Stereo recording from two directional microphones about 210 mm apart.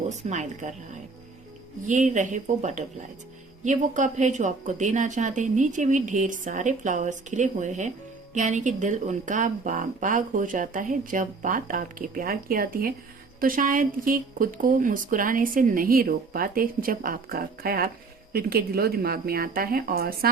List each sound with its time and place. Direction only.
0.1 s speech: 35° right (ahead or behind)
1.9 s a woman's voice: 35° right (ahead or behind)